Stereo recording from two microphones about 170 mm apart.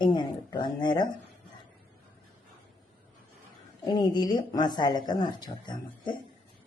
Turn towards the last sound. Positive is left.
turn(degrees=25)  # may be behind; listen again after turning